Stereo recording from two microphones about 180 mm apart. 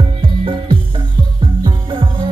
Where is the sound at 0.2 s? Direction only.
30° right (ahead or behind).